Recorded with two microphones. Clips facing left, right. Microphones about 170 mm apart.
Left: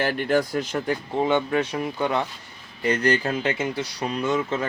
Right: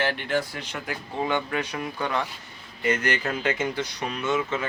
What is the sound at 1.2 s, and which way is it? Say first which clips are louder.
Speech: left 4 dB; 20° left (ahead or behind).